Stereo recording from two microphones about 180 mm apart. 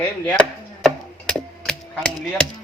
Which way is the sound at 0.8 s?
5° left (ahead or behind).